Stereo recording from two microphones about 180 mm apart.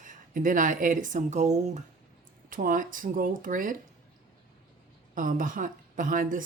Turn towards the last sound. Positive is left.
turn(degrees=-50)  # may be behind; listen again after turning